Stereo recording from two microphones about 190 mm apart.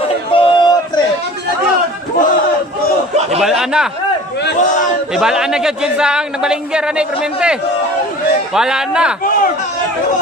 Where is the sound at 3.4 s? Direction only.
5° right (ahead or behind).